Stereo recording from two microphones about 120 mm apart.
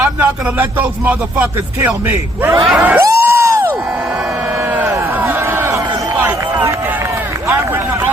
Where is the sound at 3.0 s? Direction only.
25° right (ahead or behind).